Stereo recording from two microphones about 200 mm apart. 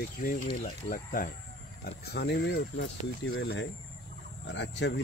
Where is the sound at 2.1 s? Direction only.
55° left (ahead or behind).